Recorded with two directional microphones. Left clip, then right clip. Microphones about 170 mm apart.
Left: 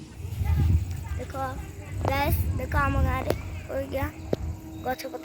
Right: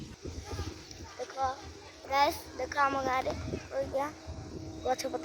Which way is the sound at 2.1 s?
20° right (ahead or behind).